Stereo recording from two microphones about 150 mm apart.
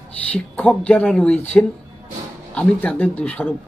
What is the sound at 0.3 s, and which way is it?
A man's voice, 10° left (ahead or behind).